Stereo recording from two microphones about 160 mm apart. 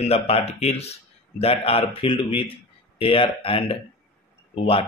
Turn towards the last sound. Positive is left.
turn(degrees=35)  # may be behind; listen again after turning